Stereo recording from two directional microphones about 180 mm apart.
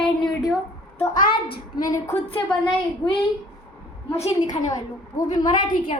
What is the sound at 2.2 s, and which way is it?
Speech, 30° left (ahead or behind).